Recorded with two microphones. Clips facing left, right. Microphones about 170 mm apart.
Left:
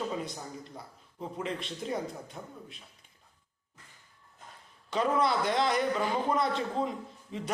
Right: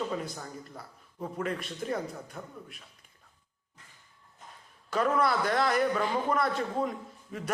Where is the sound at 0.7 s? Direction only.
20° left (ahead or behind).